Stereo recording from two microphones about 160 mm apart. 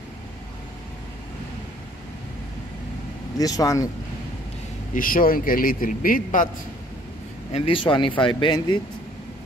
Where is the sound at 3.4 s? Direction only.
20° left (ahead or behind).